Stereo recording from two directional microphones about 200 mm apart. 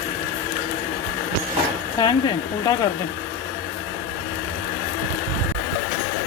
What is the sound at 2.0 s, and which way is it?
Speech, 20° left (ahead or behind).